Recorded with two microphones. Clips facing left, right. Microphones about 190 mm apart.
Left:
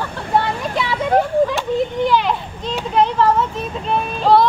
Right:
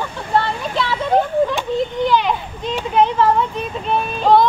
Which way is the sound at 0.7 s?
10° left (ahead or behind).